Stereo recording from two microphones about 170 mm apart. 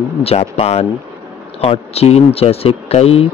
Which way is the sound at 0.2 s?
35° left (ahead or behind).